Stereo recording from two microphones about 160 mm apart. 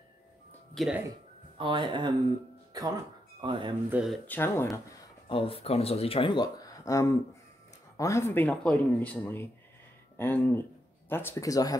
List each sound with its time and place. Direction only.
0.7 s speech: 5° right (ahead or behind)
1.6 s speech: 30° right (ahead or behind)
3.9 s speech: 5° right (ahead or behind)
4.3 s speech: 15° left (ahead or behind)
5.3 s speech: 35° left (ahead or behind); by 11.8 s 20° left (ahead or behind)